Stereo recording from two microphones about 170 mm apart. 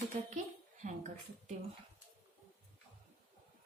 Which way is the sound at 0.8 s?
45° right (ahead or behind).